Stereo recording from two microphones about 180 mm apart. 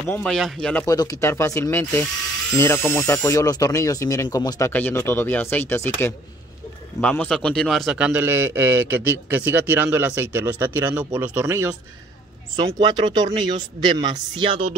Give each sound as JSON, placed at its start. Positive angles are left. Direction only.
{"t": 0.1, "sound": "speech", "side_deg": 5}
{"t": 0.8, "sound": "a man's voice", "side_deg": 20}